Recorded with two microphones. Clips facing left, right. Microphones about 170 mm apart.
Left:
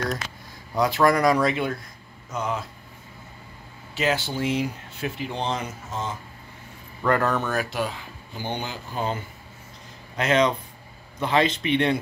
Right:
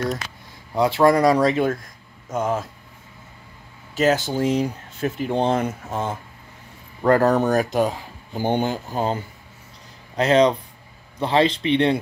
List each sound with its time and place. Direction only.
0.7 s speech: 25° right (ahead or behind); by 2.6 s 50° right (ahead or behind)
3.9 s speech: 45° right (ahead or behind)
7.0 s speech: 35° right (ahead or behind)